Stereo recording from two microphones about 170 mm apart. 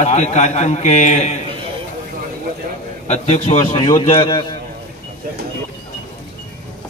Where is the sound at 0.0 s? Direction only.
45° left (ahead or behind).